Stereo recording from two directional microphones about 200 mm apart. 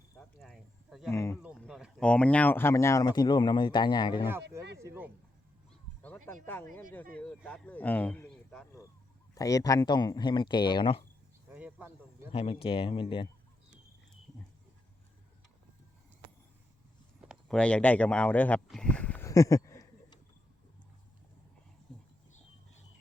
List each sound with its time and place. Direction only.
0.2 s a sound: centre (ahead or behind)
1.1 s speech: 15° left (ahead or behind)
1.5 s speech: centre (ahead or behind); by 4.3 s 20° left (ahead or behind)
4.8 s speech: 10° right (ahead or behind)
6.0 s speech: 10° left (ahead or behind)
9.3 s speech: 15° left (ahead or behind)
11.5 s a sound: 10° right (ahead or behind)
12.3 s speech: 30° left (ahead or behind)
17.2 s speech: centre (ahead or behind); by 20.1 s 15° left (ahead or behind)